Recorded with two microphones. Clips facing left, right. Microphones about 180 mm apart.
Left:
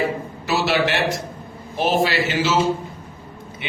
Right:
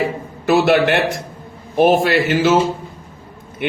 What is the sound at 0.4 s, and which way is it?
A man's voice, 55° right (ahead or behind).